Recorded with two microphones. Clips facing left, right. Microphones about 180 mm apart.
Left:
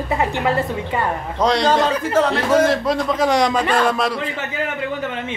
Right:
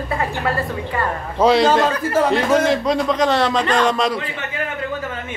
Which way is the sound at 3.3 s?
15° left (ahead or behind).